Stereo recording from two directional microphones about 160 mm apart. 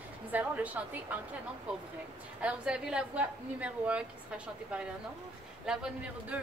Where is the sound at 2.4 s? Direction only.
5° right (ahead or behind).